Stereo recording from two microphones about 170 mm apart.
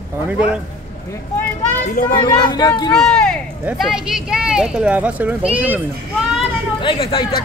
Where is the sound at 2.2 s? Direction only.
25° left (ahead or behind).